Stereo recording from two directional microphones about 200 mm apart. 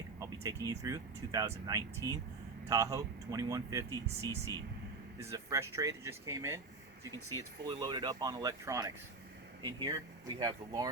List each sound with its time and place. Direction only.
0.2 s speech: 15° right (ahead or behind)
5.2 s speech: 15° right (ahead or behind)